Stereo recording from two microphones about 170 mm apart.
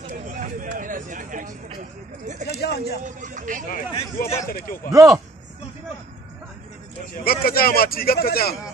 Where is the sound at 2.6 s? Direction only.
75° left (ahead or behind).